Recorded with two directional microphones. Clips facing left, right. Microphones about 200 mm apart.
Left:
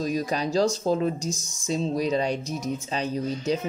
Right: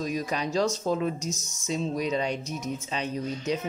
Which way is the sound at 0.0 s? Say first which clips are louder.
Left 3 dB; 35° left (ahead or behind).